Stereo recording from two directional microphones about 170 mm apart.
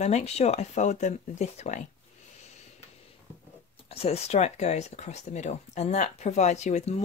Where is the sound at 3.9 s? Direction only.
35° left (ahead or behind).